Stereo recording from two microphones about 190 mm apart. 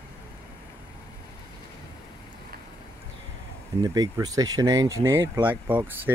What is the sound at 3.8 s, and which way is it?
Speech, 20° right (ahead or behind).